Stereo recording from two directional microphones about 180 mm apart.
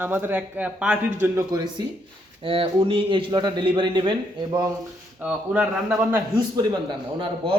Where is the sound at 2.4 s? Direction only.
30° right (ahead or behind).